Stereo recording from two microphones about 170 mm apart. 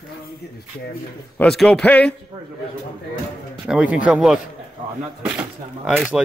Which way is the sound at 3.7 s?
5° right (ahead or behind).